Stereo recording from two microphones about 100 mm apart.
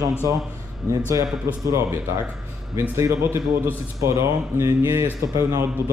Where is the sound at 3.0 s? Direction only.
30° right (ahead or behind).